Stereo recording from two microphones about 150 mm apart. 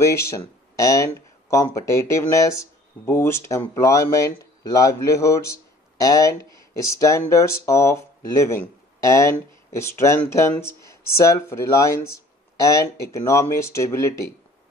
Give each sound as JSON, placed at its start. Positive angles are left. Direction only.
{"t": 0.0, "sound": "speech", "side_deg": 20}